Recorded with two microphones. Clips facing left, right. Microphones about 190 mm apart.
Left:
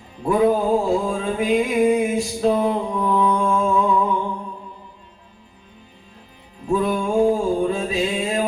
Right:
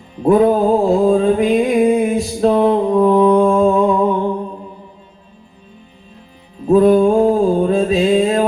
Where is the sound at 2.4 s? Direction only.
70° right (ahead or behind).